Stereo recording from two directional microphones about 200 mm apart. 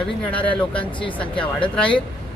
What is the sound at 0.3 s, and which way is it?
Speech, 25° left (ahead or behind).